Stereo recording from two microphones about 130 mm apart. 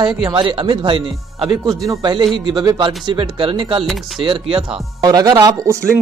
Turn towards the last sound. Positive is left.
turn(degrees=-25)  # may be behind; listen again after turning